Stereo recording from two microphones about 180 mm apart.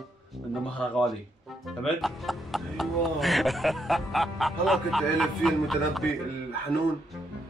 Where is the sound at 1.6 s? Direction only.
Centre (ahead or behind).